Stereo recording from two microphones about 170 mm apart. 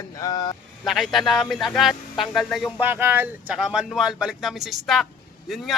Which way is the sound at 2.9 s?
10° right (ahead or behind).